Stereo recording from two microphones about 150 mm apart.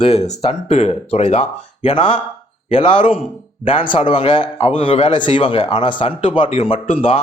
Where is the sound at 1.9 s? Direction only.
35° left (ahead or behind).